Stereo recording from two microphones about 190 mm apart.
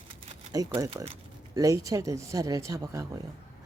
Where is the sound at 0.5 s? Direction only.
20° right (ahead or behind).